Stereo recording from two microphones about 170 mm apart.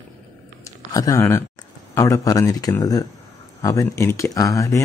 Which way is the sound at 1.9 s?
20° left (ahead or behind).